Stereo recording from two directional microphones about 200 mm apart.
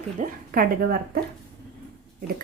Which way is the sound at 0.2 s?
45° right (ahead or behind).